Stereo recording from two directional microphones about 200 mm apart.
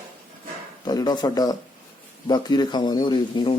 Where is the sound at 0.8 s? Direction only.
20° left (ahead or behind).